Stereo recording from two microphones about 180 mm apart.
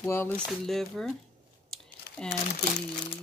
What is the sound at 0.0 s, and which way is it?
Speech, 10° left (ahead or behind).